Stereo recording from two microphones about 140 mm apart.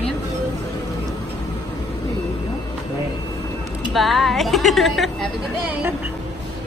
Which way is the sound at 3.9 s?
Centre (ahead or behind).